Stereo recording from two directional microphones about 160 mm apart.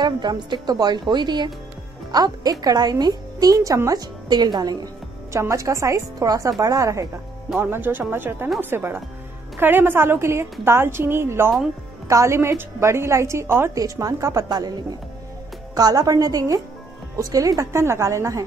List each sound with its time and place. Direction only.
0.0 s a woman's voice: 25° right (ahead or behind)
7.4 s a woman's voice: 5° right (ahead or behind); by 18.4 s 20° right (ahead or behind)